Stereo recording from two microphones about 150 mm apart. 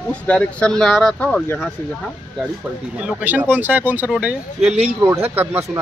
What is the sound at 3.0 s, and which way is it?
Speech, 10° right (ahead or behind).